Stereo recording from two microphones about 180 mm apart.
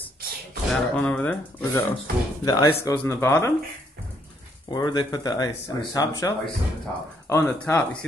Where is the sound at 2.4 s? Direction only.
20° left (ahead or behind).